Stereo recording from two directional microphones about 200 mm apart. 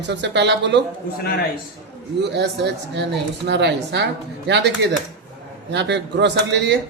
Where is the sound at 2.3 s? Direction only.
60° right (ahead or behind).